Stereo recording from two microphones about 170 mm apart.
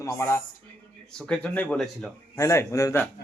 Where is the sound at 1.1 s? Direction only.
5° left (ahead or behind).